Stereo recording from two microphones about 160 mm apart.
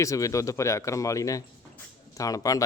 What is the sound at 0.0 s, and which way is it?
Speech, 20° left (ahead or behind).